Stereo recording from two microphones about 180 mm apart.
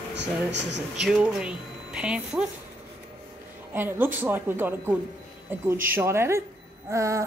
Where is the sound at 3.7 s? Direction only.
10° right (ahead or behind).